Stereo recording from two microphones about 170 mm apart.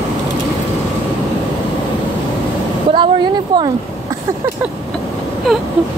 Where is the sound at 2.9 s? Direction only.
30° right (ahead or behind).